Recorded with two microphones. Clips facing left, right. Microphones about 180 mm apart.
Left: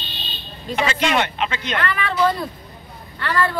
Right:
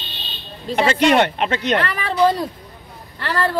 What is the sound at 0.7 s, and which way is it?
Speech, 50° right (ahead or behind).